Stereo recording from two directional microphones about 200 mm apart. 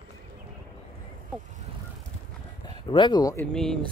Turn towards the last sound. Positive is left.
turn(degrees=0)  # may be behind; listen again after turning